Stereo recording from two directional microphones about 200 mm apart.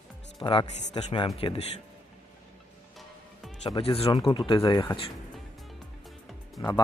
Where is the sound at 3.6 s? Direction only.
25° left (ahead or behind).